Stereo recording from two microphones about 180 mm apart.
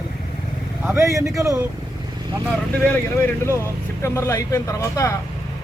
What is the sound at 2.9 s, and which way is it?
Speech, 10° left (ahead or behind).